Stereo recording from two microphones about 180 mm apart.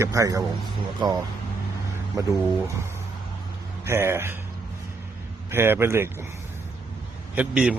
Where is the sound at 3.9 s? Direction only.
15° right (ahead or behind).